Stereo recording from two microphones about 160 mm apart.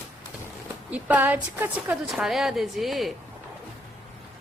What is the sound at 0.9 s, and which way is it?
A woman's voice, 10° right (ahead or behind).